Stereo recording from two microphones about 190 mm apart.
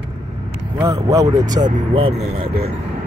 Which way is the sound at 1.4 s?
40° right (ahead or behind).